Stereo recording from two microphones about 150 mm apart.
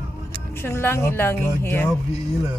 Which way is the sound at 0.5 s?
15° left (ahead or behind).